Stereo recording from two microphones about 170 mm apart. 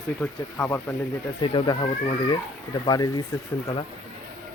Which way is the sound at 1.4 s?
30° left (ahead or behind).